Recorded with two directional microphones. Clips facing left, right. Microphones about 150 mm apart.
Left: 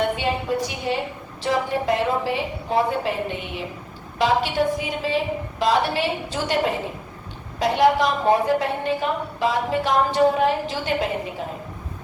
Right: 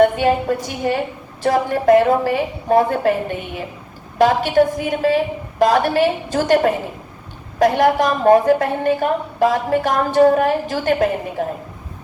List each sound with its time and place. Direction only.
0.0 s a woman's voice: 45° right (ahead or behind)